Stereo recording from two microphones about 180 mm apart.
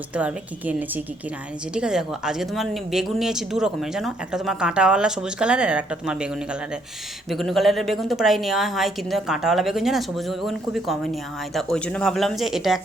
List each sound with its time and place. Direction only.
0.1 s a woman's voice: 5° right (ahead or behind)